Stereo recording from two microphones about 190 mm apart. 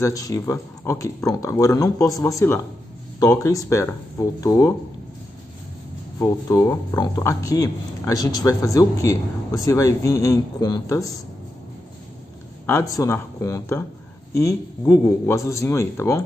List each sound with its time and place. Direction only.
0.0 s speech: 15° left (ahead or behind)
6.1 s speech: 15° left (ahead or behind)
12.6 s speech: 15° left (ahead or behind)